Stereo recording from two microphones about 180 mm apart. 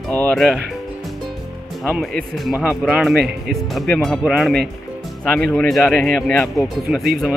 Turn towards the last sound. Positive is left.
turn(degrees=0)  # may be behind; listen again after turning